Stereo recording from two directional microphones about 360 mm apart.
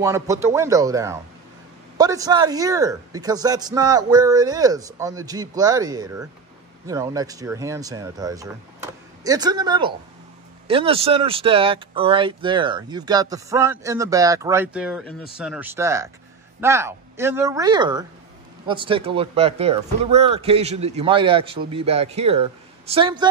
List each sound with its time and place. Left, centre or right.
0.0 s speech: centre